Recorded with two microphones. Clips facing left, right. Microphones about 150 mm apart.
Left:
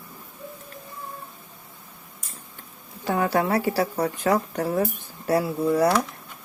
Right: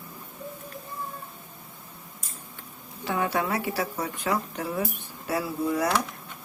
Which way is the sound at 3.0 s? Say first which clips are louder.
Left 4 dB; 40° left (ahead or behind).